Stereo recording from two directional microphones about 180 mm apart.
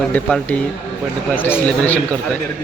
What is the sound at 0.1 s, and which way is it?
Speech, 5° left (ahead or behind).